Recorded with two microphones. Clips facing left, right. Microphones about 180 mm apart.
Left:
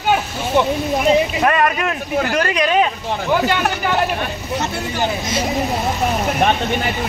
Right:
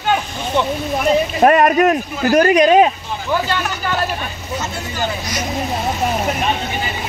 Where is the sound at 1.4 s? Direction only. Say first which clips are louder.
Right 6 dB; 30° right (ahead or behind).